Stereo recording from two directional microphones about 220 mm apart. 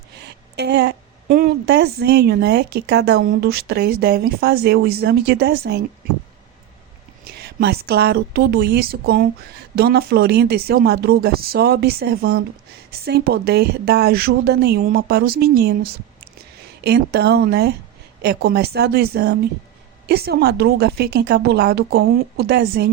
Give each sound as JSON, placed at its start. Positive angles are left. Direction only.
{"t": 0.2, "sound": "a woman's voice", "side_deg": -50}
{"t": 7.3, "sound": "a woman's voice", "side_deg": -45}